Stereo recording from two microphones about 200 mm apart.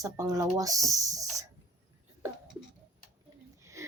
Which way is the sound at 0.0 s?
15° right (ahead or behind).